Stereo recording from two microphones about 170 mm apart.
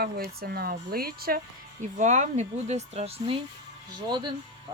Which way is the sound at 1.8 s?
45° right (ahead or behind).